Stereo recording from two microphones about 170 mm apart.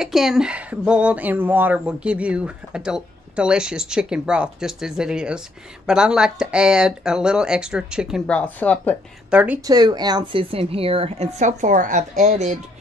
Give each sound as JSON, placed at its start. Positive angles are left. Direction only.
{"t": 0.0, "sound": "speech", "side_deg": 0}
{"t": 8.3, "sound": "speech", "side_deg": 5}
{"t": 9.3, "sound": "speech", "side_deg": -10}
{"t": 9.7, "sound": "a woman's voice", "side_deg": -25}